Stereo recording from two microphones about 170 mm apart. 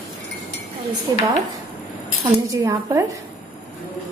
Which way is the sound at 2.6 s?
15° right (ahead or behind).